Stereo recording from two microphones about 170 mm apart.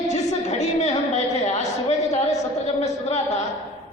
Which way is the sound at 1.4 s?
40° left (ahead or behind).